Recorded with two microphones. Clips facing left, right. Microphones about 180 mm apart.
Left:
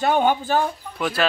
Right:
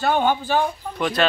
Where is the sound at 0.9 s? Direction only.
5° left (ahead or behind).